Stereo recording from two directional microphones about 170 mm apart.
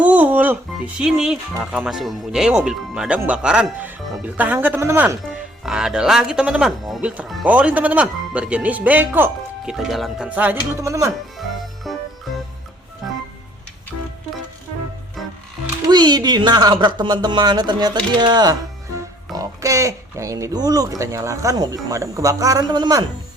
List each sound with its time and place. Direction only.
0.0 s music: 10° right (ahead or behind)
0.9 s speech: 5° right (ahead or behind)
5.6 s speech: 5° right (ahead or behind)
11.3 s music: centre (ahead or behind)
13.0 s music: centre (ahead or behind)
15.2 s music: centre (ahead or behind)
15.9 s speech: 25° right (ahead or behind)